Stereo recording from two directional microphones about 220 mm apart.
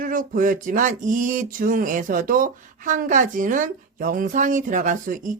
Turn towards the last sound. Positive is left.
turn(degrees=-35)  # may be behind; listen again after turning